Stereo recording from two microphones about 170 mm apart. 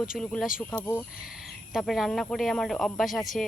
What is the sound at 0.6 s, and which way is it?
Speech, 10° left (ahead or behind).